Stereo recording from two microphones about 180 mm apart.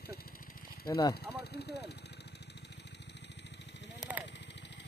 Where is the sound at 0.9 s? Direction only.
20° left (ahead or behind).